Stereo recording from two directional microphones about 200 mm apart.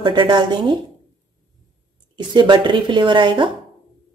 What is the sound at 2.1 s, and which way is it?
Speech, 20° right (ahead or behind).